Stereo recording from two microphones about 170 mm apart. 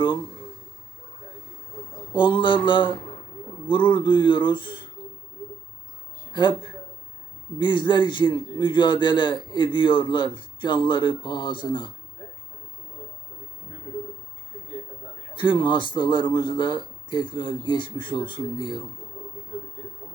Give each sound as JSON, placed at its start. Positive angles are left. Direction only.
{"t": 2.1, "sound": "a man's voice", "side_deg": 30}
{"t": 6.3, "sound": "a man's voice", "side_deg": 30}
{"t": 15.3, "sound": "a man's voice", "side_deg": 30}